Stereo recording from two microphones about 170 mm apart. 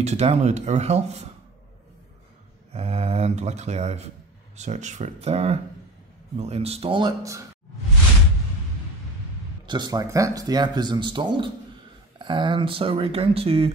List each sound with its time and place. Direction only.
0.0 s speech: 40° right (ahead or behind)
2.7 s speech: 40° right (ahead or behind); by 7.4 s 20° right (ahead or behind)
9.7 s speech: 25° right (ahead or behind)